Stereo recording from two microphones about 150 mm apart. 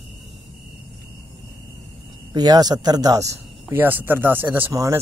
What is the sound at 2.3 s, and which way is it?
Speech, 25° right (ahead or behind).